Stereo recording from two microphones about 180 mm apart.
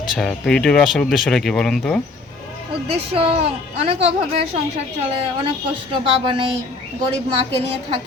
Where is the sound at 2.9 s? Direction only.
35° right (ahead or behind).